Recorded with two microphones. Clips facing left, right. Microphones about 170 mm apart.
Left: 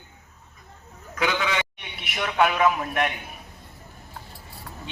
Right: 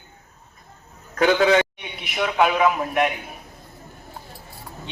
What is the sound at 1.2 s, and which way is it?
Speech, 40° right (ahead or behind).